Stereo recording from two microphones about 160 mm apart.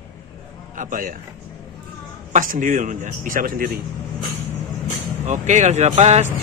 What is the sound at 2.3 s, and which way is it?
Speech, 55° right (ahead or behind).